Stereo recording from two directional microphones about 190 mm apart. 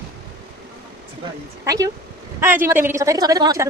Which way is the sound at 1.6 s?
15° right (ahead or behind).